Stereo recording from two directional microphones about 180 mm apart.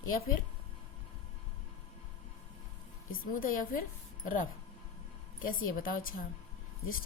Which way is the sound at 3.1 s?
50° left (ahead or behind).